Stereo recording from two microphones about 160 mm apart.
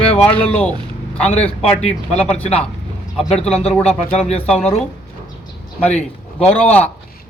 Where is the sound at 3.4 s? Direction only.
40° left (ahead or behind).